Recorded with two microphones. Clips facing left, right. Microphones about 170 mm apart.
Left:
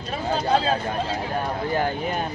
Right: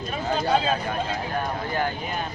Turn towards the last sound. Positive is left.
turn(degrees=35)  # may be behind; listen again after turning